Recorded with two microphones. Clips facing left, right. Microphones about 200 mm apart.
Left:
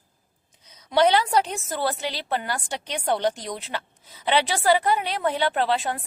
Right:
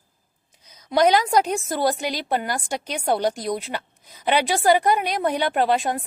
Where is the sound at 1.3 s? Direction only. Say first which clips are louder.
Right 3 dB; 10° right (ahead or behind).